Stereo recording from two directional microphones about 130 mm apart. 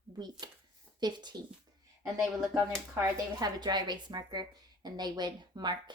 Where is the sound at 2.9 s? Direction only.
30° right (ahead or behind).